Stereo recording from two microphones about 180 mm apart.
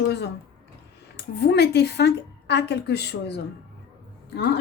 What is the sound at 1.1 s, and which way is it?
A woman's voice, 65° left (ahead or behind).